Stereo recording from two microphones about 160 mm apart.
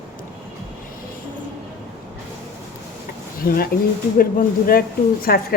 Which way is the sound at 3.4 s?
65° left (ahead or behind).